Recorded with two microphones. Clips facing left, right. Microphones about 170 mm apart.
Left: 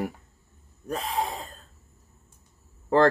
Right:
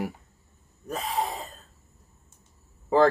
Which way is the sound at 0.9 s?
Centre (ahead or behind).